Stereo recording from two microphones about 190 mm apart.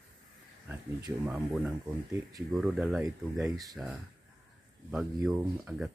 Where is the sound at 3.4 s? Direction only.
20° right (ahead or behind).